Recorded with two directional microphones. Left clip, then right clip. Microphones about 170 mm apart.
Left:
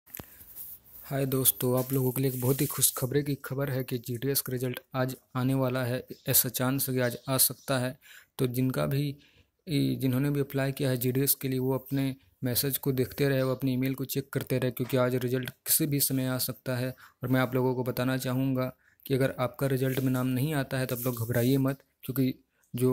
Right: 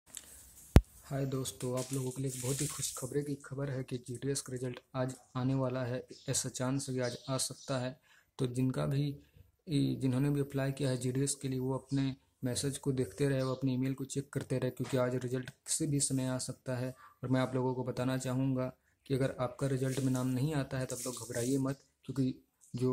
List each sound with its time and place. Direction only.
1.0 s speech: 35° left (ahead or behind)